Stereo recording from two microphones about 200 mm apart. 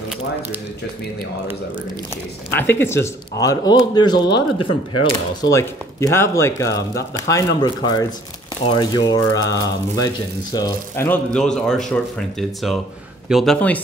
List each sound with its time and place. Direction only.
2.5 s speech: 10° left (ahead or behind)